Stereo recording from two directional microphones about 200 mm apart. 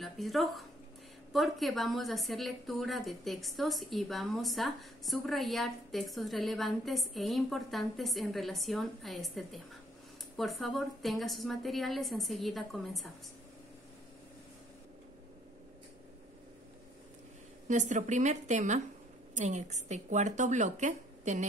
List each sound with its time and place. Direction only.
0.0 s a woman's voice: centre (ahead or behind)
17.6 s speech: 40° right (ahead or behind)